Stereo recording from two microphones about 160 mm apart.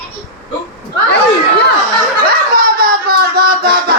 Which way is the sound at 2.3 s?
65° right (ahead or behind).